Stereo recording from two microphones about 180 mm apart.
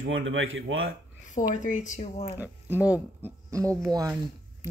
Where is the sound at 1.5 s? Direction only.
45° left (ahead or behind).